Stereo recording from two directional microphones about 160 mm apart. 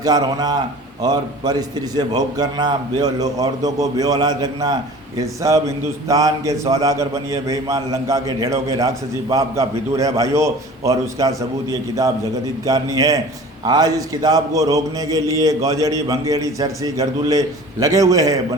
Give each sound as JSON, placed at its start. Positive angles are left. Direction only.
{"t": 0.0, "sound": "a man's voice", "side_deg": -25}